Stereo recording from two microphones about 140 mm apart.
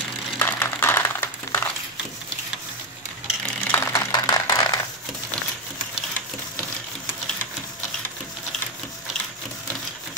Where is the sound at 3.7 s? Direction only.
25° left (ahead or behind).